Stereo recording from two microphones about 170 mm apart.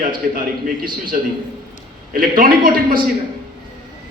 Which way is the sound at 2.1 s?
60° right (ahead or behind).